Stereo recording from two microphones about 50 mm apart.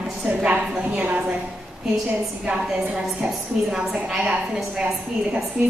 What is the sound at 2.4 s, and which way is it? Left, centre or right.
A woman's voice, centre.